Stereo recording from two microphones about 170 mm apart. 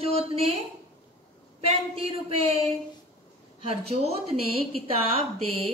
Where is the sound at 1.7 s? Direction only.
35° right (ahead or behind).